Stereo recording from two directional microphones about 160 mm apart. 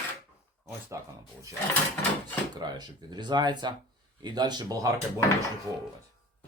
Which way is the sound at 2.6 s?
25° right (ahead or behind).